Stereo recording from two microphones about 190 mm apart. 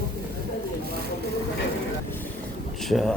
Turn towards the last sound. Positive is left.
turn(degrees=0)  # may be behind; listen again after turning